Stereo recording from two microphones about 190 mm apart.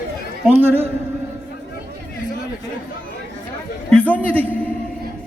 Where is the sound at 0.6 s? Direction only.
10° right (ahead or behind).